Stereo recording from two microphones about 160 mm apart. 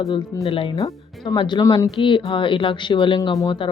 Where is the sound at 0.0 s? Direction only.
25° left (ahead or behind).